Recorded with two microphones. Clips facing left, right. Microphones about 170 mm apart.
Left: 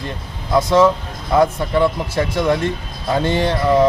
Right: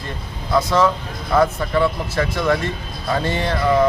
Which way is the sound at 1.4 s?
20° left (ahead or behind).